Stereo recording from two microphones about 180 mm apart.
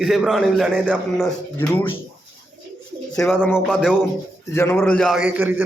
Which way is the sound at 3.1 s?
5° left (ahead or behind).